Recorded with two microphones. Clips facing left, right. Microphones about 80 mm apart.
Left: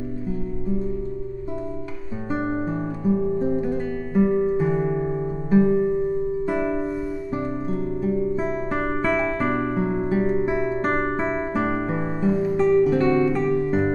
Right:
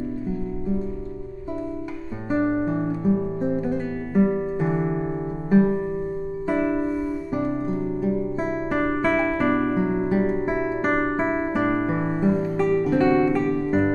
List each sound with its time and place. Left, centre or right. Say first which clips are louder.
2.3 s guitar: right 4 dB; centre
3.0 s music: left 1 dB; centre
3.6 s guitar: even; centre
4.6 s music: left 2 dB; centre
6.4 s music: right 1 dB; centre
9.8 s music: right 1 dB; centre